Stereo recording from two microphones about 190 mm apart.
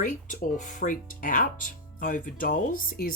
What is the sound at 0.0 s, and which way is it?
Speech, 45° left (ahead or behind).